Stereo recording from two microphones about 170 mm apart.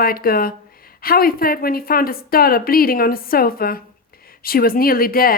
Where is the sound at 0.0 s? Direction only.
60° left (ahead or behind).